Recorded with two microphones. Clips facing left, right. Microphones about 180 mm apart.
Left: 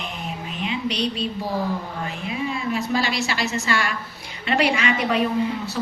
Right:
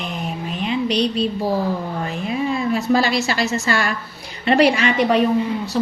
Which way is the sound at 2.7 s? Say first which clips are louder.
Right 6 dB; 40° right (ahead or behind).